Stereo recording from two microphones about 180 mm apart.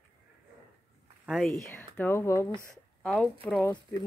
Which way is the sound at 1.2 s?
Centre (ahead or behind).